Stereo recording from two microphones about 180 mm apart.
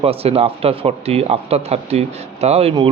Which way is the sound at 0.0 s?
35° right (ahead or behind).